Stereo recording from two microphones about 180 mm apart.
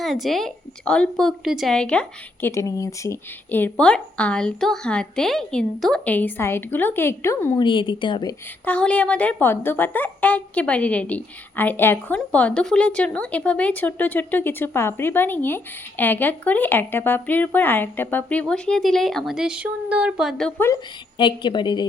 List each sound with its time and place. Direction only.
0.0 s a woman's voice: centre (ahead or behind)
7.6 s speech: 25° left (ahead or behind)
8.6 s a woman's voice: 5° left (ahead or behind)
21.2 s speech: 25° left (ahead or behind)